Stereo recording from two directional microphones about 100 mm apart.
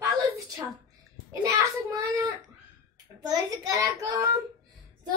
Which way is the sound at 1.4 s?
30° right (ahead or behind).